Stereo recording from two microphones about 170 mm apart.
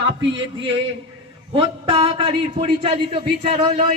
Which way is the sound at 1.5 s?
35° right (ahead or behind).